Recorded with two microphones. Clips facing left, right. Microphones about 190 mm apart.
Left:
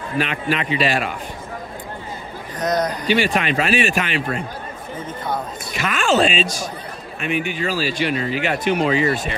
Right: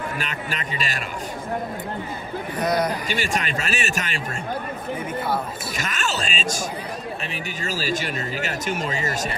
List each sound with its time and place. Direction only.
0.2 s speech: 40° right (ahead or behind)
2.5 s speech: 10° right (ahead or behind)
3.1 s speech: 45° right (ahead or behind)
5.8 s speech: 45° right (ahead or behind)